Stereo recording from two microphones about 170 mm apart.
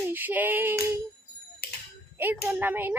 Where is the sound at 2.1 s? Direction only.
10° right (ahead or behind).